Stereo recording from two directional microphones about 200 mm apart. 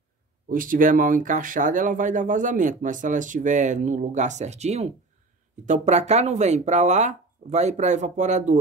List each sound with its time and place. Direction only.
0.5 s speech: 45° right (ahead or behind)